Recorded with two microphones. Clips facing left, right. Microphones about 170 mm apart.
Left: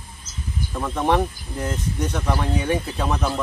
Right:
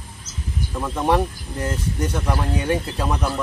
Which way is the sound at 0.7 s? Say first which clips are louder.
Even; 5° right (ahead or behind).